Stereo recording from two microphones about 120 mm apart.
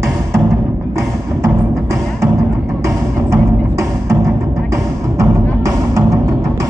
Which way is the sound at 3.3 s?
25° right (ahead or behind).